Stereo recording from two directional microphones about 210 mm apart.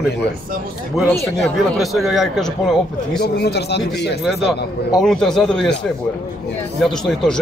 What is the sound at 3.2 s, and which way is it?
Speech, 50° left (ahead or behind).